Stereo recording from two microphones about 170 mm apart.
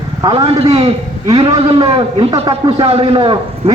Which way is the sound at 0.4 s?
35° right (ahead or behind).